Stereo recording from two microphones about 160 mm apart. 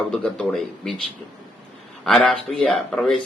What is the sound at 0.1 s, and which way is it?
Speech, 5° left (ahead or behind).